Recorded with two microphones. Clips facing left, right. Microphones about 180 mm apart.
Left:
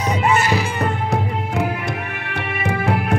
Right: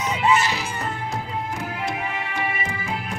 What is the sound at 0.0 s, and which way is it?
Music, 40° left (ahead or behind).